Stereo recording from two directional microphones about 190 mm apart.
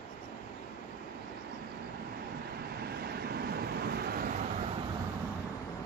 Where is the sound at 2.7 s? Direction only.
55° right (ahead or behind).